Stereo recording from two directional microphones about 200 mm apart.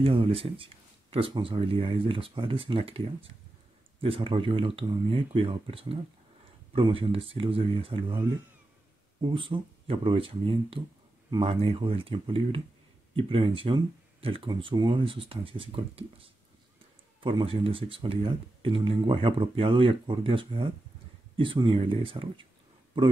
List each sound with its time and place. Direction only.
0.0 s speech: 25° right (ahead or behind)
9.2 s speech: 25° right (ahead or behind)